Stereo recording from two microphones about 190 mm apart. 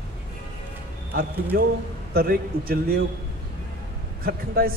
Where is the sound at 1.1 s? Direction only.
50° right (ahead or behind).